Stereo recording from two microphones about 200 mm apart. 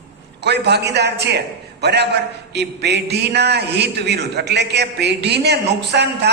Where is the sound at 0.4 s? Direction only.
55° right (ahead or behind).